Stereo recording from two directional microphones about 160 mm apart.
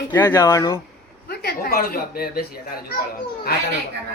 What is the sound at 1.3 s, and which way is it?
A child's voice, 80° left.